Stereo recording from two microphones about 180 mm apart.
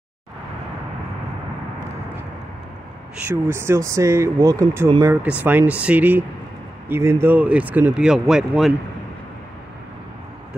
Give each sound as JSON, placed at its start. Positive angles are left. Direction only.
{"t": 3.3, "sound": "speech", "side_deg": -15}
{"t": 5.4, "sound": "speech", "side_deg": -10}